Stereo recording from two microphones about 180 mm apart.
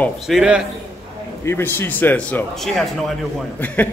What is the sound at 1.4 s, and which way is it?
A man's voice, 15° left (ahead or behind).